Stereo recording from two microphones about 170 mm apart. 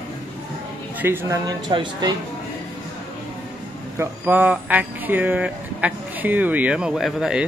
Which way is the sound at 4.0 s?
10° right (ahead or behind).